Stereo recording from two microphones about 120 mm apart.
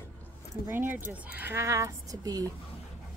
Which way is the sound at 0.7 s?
15° right (ahead or behind).